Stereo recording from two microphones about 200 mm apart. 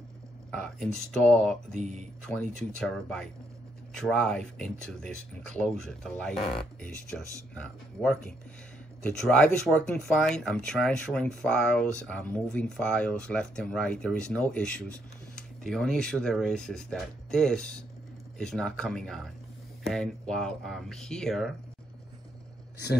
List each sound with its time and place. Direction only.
0.5 s speech: 5° left (ahead or behind)
1.8 s speech: 35° right (ahead or behind)
2.2 s speech: 5° left (ahead or behind)